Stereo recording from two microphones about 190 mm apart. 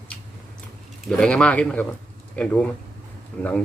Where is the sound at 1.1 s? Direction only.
5° left (ahead or behind).